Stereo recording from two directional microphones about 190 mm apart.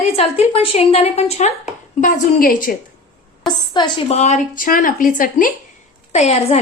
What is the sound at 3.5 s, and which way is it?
Speech, 25° left (ahead or behind).